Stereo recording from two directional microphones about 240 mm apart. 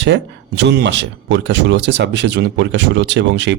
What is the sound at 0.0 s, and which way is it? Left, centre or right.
Speech, right.